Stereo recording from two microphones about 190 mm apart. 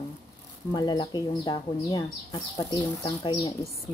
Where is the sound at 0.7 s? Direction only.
25° left (ahead or behind).